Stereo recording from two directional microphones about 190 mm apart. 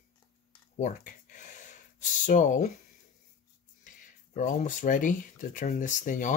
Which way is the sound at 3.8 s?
45° left (ahead or behind).